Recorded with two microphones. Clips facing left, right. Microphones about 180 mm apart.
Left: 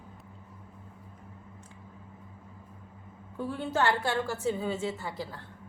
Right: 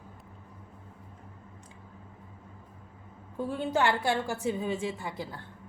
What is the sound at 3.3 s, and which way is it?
A woman's voice, 15° right (ahead or behind).